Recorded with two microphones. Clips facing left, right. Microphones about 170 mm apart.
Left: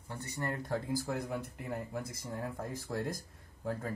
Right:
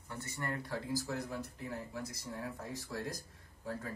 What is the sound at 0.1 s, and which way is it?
Speech, 15° left (ahead or behind).